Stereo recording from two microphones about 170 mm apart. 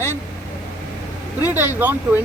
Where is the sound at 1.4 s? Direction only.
10° right (ahead or behind).